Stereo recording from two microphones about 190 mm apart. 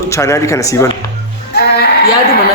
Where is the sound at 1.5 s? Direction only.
55° left (ahead or behind).